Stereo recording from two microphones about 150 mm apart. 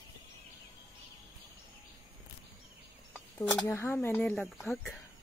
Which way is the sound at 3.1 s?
15° left (ahead or behind).